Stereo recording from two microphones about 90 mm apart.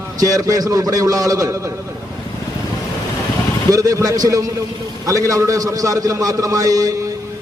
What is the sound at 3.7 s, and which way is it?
A man's voice, 40° right (ahead or behind).